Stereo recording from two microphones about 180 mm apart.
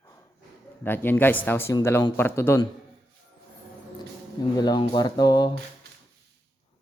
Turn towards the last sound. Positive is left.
turn(degrees=20)  # may be behind; listen again after turning